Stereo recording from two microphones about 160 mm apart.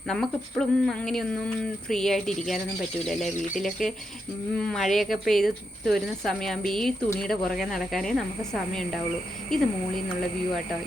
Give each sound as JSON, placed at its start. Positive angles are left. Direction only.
{"t": 0.1, "sound": "speech", "side_deg": 5}